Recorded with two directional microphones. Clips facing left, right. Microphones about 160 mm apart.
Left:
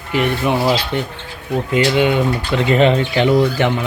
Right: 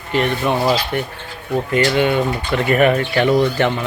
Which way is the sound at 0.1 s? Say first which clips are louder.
Left 1 dB; 15° left (ahead or behind).